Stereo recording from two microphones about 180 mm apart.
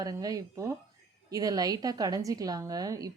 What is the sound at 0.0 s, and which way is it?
A woman's voice, 20° right (ahead or behind).